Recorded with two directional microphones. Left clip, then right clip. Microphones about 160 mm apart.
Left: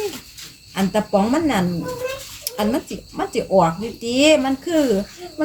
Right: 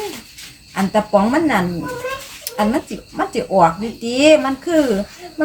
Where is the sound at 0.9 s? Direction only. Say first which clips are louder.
Right 4 dB; 15° left (ahead or behind).